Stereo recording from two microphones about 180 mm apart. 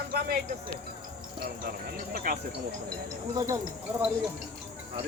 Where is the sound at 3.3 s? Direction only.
15° right (ahead or behind).